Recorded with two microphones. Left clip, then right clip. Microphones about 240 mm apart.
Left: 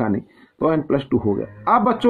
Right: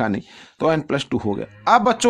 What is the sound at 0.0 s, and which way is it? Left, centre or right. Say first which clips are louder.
Speech: even; right.